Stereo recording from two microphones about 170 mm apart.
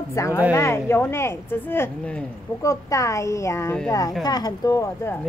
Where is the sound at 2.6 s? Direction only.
20° left (ahead or behind).